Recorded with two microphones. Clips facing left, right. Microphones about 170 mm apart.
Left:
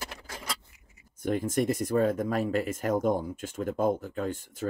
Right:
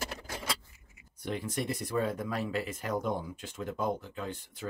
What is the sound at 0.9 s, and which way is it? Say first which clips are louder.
Speech: left 7 dB; 45° left (ahead or behind).